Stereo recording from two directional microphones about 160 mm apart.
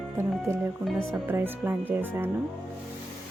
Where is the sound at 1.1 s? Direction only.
15° right (ahead or behind).